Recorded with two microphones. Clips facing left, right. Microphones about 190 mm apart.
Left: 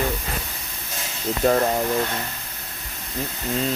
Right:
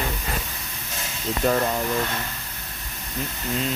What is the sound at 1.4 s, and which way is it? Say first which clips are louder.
Speech: left 3 dB; 35° left (ahead or behind).